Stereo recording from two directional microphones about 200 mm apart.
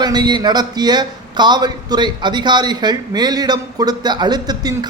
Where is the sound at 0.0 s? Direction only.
20° right (ahead or behind).